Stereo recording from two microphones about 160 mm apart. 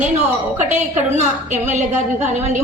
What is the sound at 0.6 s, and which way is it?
A woman's voice, 50° right (ahead or behind).